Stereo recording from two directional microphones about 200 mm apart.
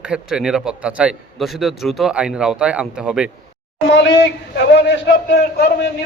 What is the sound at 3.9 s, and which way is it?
A man's voice, 60° left (ahead or behind).